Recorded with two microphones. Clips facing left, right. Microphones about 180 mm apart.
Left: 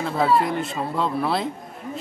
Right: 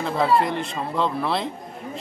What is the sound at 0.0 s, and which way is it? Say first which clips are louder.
Speech: even; 5° left (ahead or behind).